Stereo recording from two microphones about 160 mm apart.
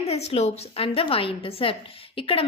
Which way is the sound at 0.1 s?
40° left (ahead or behind).